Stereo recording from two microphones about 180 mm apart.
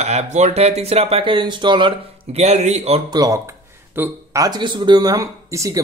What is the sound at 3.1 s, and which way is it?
Speech, 20° right (ahead or behind).